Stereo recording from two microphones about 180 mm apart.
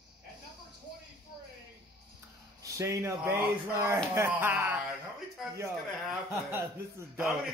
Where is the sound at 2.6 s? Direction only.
15° right (ahead or behind).